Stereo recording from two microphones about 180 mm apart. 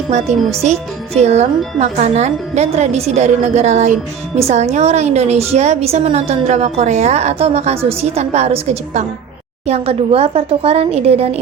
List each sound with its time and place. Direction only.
0.1 s a woman's voice: 35° right (ahead or behind)